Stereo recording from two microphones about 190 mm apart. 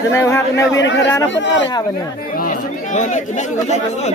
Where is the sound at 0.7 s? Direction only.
70° left (ahead or behind).